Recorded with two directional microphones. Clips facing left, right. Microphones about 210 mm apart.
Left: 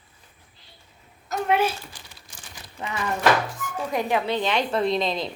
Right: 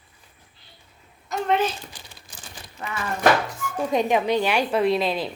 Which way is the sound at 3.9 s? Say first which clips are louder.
Right 3 dB; 15° right (ahead or behind).